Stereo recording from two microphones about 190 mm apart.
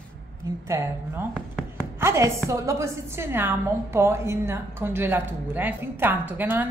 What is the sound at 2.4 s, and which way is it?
A woman's voice, 15° right (ahead or behind).